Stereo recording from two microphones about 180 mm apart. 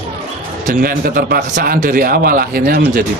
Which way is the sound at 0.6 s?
55° right (ahead or behind).